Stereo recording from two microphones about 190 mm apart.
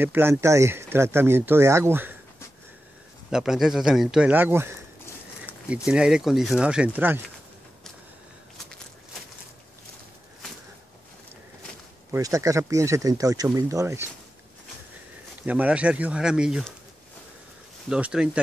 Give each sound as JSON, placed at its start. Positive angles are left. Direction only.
{"t": 0.0, "sound": "speech", "side_deg": -10}
{"t": 3.3, "sound": "speech", "side_deg": -5}
{"t": 5.9, "sound": "speech", "side_deg": -5}
{"t": 12.1, "sound": "speech", "side_deg": -15}
{"t": 15.4, "sound": "speech", "side_deg": -10}
{"t": 17.8, "sound": "speech", "side_deg": -5}